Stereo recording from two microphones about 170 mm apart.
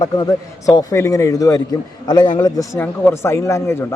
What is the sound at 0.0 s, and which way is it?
A man's voice, 20° left (ahead or behind).